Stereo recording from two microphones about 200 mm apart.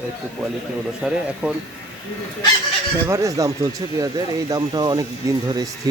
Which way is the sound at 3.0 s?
15° right (ahead or behind).